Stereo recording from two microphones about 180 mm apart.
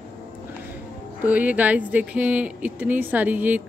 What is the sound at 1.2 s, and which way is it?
Speech, 10° right (ahead or behind).